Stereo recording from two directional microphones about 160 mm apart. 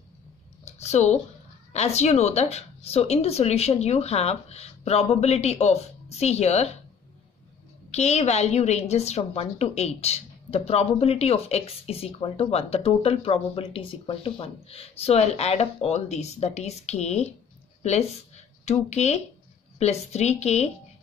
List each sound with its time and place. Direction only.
0.7 s a woman's voice: 45° left (ahead or behind)
7.9 s a woman's voice: 45° left (ahead or behind)